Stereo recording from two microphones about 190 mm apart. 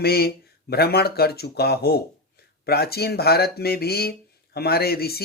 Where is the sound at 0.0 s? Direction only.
55° left (ahead or behind).